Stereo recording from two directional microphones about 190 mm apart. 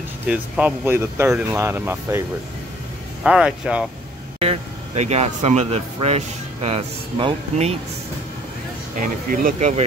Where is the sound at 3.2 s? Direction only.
5° right (ahead or behind).